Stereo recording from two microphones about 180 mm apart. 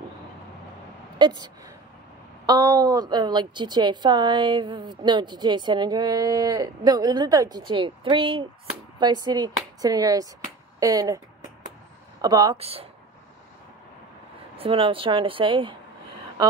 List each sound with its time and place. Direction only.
1.1 s a woman's voice: 25° right (ahead or behind)
12.2 s a woman's voice: 20° right (ahead or behind)
12.5 s speech: 35° right (ahead or behind)
14.6 s a woman's voice: 30° right (ahead or behind)